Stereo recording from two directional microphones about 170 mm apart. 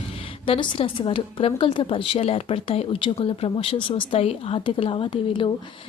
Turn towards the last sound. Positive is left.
turn(degrees=30)  # may be behind; listen again after turning